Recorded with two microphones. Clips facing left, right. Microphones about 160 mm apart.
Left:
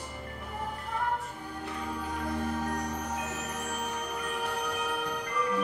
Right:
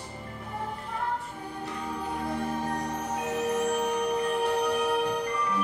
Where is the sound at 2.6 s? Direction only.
30° right (ahead or behind).